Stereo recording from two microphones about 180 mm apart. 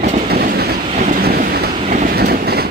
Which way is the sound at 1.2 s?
60° right (ahead or behind).